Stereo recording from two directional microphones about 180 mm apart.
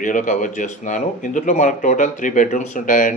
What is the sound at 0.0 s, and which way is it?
A man's voice, 45° left (ahead or behind).